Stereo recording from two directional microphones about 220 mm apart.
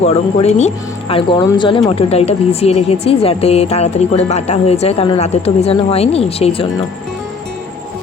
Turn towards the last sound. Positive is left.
turn(degrees=25)  # may be behind; listen again after turning